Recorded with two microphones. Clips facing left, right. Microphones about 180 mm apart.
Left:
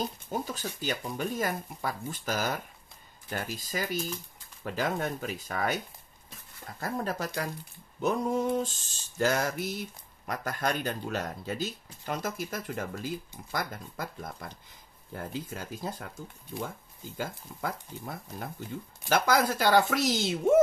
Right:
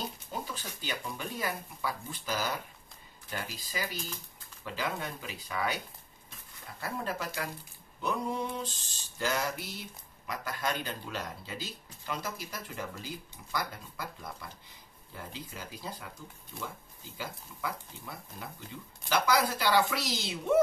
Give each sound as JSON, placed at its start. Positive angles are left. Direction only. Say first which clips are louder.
{"t": 0.3, "sound": "speech", "louder": "left 5 dB", "side_deg": 45}
{"t": 6.8, "sound": "speech", "louder": "left 4 dB", "side_deg": 40}
{"t": 17.2, "sound": "speech", "louder": "left 4 dB", "side_deg": 50}